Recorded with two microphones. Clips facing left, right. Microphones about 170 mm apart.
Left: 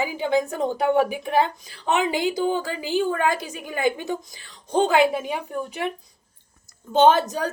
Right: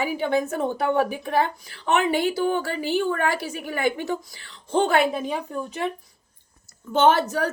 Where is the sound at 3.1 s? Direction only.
15° left (ahead or behind).